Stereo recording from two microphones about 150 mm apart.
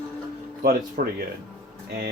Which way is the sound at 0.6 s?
75° right (ahead or behind).